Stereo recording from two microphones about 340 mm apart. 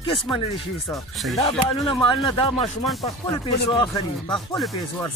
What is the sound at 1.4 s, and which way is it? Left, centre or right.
Speech, centre.